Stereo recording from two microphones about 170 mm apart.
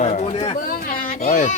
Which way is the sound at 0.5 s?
60° left (ahead or behind).